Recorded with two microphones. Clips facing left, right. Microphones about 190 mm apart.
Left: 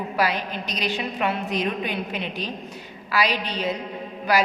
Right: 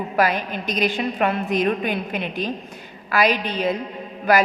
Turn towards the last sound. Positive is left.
turn(degrees=-50)  # may be behind; listen again after turning